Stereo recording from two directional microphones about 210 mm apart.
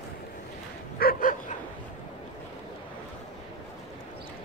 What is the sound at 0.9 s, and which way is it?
Bow-wow, 45° left (ahead or behind).